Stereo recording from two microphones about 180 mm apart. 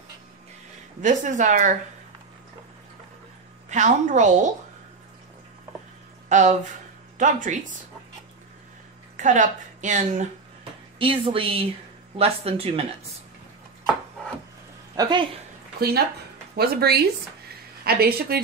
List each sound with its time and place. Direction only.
1.0 s speech: 45° right (ahead or behind)
3.7 s a woman's voice: 40° right (ahead or behind)
6.2 s a sound: 45° right (ahead or behind)
7.2 s speech: 45° right (ahead or behind)
9.1 s a woman's voice: 45° right (ahead or behind)
10.6 s a sound: 30° right (ahead or behind)
12.2 s a woman's voice: 35° right (ahead or behind)
15.0 s speech: 25° right (ahead or behind)
16.5 s speech: 60° right (ahead or behind)
17.5 s a sound: 60° right (ahead or behind)